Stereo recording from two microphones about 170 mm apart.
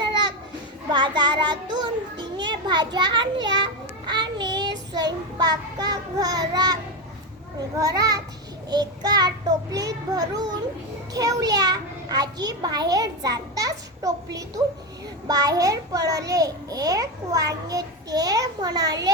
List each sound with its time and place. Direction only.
0.0 s children playing: 25° right (ahead or behind)
0.9 s a child's voice: 25° right (ahead or behind)
3.4 s child singing: 25° right (ahead or behind)
4.9 s a child's voice: 25° right (ahead or behind)
7.8 s a child's voice: 20° right (ahead or behind)
15.3 s a child's voice: 20° right (ahead or behind)